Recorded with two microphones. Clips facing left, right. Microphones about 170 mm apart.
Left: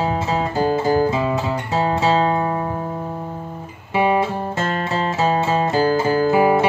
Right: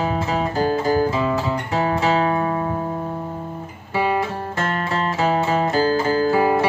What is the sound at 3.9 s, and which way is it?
Music, 20° left (ahead or behind).